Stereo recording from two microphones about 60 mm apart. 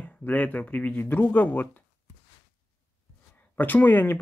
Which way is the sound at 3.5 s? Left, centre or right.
Left.